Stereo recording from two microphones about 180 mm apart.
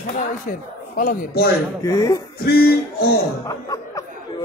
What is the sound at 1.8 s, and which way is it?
Speech, 20° left (ahead or behind).